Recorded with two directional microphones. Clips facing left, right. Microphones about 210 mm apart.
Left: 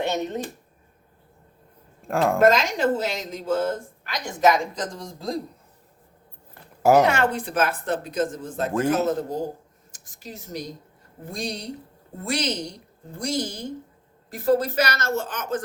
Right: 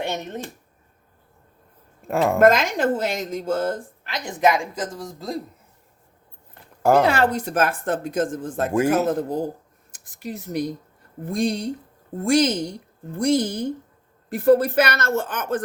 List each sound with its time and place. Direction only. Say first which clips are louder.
2.0 s speech: right 1 dB; centre (ahead or behind)
2.4 s speech: right 2 dB; 55° right (ahead or behind)
4.0 s a woman's voice: even; 20° right (ahead or behind); by 5.4 s centre (ahead or behind)
7.0 s a woman's voice: right 2 dB; 35° right (ahead or behind); by 15.6 s 55° right (ahead or behind)